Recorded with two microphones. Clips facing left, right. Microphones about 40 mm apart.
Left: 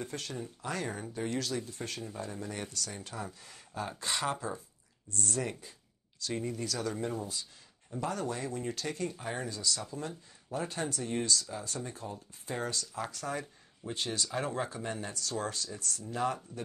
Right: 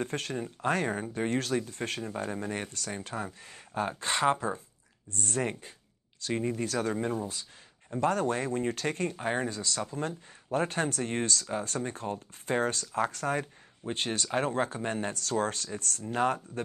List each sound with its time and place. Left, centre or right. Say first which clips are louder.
0.0 s speech: right 6 dB; right